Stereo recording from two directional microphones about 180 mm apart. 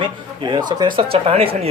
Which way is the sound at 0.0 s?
25° right (ahead or behind).